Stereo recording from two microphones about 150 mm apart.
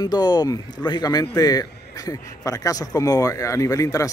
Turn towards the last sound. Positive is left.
turn(degrees=20)  # may be behind; listen again after turning